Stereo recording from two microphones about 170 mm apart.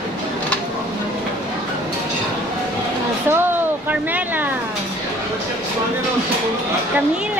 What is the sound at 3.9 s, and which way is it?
Speech, 10° right (ahead or behind).